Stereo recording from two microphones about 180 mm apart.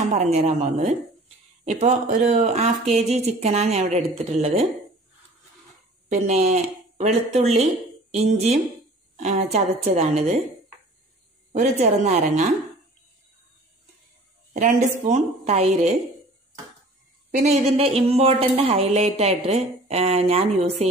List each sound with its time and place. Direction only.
0.1 s speech: 35° right (ahead or behind)
6.0 s speech: 40° right (ahead or behind)
11.5 s speech: 40° right (ahead or behind)
14.5 s speech: 40° right (ahead or behind)
17.4 s speech: 35° right (ahead or behind)